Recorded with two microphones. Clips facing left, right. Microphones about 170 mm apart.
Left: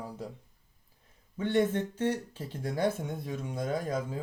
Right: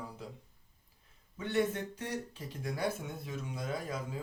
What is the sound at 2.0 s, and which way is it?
Speech, 35° left (ahead or behind).